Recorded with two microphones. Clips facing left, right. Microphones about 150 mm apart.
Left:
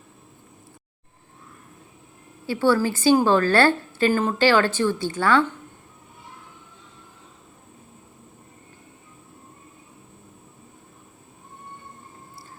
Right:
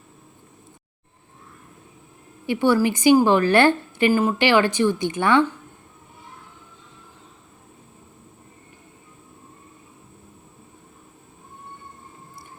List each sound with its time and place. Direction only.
2.5 s a woman's voice: 15° right (ahead or behind)